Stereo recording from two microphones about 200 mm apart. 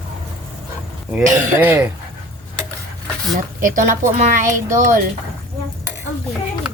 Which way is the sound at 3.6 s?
40° right (ahead or behind).